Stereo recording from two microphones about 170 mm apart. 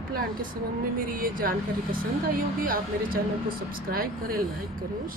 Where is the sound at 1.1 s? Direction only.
55° right (ahead or behind).